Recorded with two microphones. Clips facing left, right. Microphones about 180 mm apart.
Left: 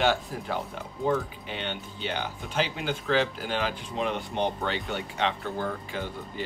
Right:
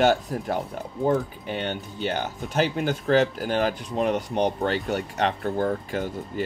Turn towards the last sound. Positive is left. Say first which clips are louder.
# right 6 dB
turn(degrees=-45)  # may be behind; listen again after turning